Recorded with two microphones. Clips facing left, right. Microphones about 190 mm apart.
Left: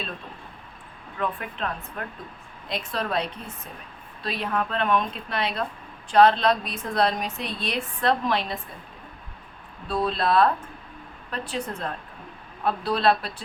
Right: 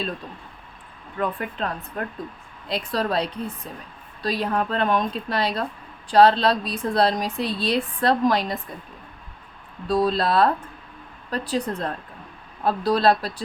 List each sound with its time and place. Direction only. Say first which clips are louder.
1.2 s a woman's voice: right 3 dB; 35° right (ahead or behind)
9.8 s a woman's voice: right 4 dB; 40° right (ahead or behind)